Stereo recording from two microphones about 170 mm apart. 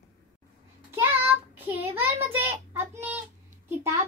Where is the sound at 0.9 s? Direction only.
10° right (ahead or behind).